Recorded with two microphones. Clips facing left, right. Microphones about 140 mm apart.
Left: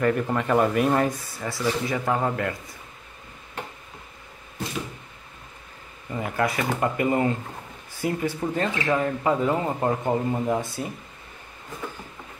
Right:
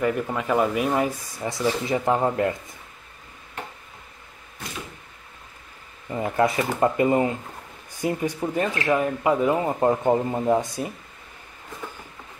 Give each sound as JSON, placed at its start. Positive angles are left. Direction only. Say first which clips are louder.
{"t": 0.0, "sound": "speech", "louder": "left 1 dB", "side_deg": -5}
{"t": 6.0, "sound": "speech", "louder": "right 4 dB", "side_deg": -25}